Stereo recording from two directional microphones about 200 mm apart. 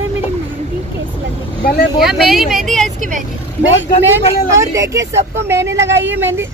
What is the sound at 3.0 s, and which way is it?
Speech, 40° right (ahead or behind).